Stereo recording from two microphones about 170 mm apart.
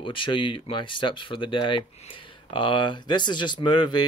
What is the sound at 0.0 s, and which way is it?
Speech, 30° left (ahead or behind).